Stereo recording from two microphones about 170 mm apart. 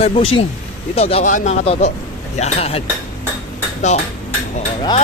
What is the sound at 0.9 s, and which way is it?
Speech, 35° left (ahead or behind).